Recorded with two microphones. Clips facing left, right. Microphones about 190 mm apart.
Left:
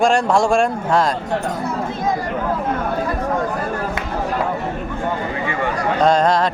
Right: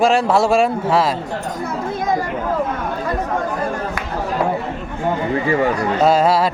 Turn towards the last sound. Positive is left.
turn(degrees=-5)  # may be behind; listen again after turning